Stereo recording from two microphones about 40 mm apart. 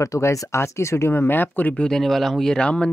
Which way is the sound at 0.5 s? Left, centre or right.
Left.